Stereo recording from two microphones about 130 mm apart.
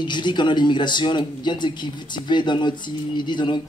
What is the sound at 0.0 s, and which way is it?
Speech, 35° left (ahead or behind).